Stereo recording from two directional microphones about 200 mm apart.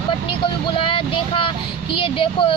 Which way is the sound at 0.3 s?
25° left (ahead or behind).